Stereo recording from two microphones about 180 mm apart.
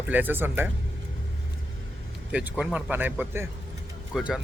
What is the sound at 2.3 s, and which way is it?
Speech, 10° right (ahead or behind).